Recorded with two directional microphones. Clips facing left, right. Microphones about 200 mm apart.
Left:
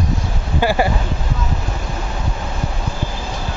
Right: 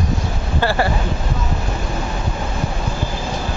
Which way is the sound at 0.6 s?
15° left (ahead or behind).